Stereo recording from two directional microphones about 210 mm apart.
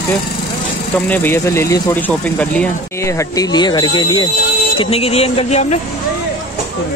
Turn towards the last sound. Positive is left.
turn(degrees=30)  # may be behind; listen again after turning